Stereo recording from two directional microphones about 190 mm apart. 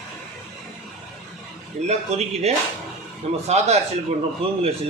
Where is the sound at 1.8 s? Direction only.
35° right (ahead or behind).